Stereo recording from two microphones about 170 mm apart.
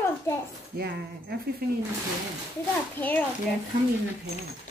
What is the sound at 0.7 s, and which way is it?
Speech, 70° right (ahead or behind).